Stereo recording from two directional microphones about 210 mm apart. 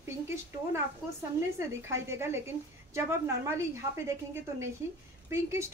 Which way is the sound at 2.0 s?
10° right (ahead or behind).